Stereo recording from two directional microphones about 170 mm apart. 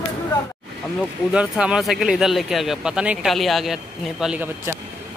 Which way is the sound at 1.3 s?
5° right (ahead or behind).